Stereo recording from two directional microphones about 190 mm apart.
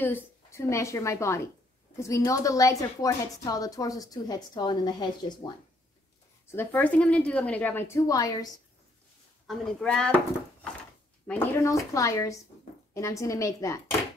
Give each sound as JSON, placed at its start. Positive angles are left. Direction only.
{"t": 0.0, "sound": "a woman's voice", "side_deg": 10}
{"t": 6.4, "sound": "a woman's voice", "side_deg": 10}
{"t": 9.5, "sound": "a woman's voice", "side_deg": 0}